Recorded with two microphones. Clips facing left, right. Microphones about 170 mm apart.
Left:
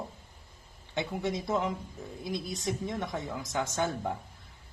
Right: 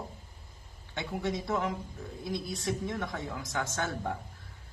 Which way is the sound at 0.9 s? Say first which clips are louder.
Left 1 dB; 20° left (ahead or behind).